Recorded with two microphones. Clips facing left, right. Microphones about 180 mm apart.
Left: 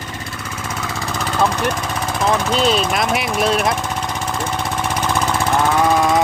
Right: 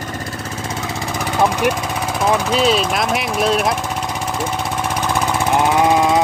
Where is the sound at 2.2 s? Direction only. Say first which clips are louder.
Right 1 dB; 10° right (ahead or behind).